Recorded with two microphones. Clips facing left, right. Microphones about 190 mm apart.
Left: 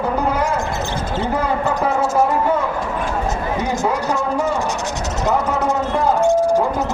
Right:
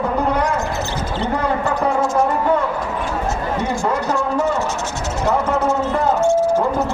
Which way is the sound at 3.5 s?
20° left (ahead or behind).